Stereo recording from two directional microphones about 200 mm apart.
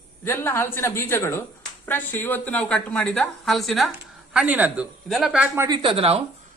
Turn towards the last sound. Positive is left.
turn(degrees=-30)  # may be behind; listen again after turning